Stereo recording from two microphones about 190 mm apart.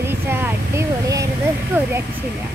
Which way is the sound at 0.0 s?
10° right (ahead or behind).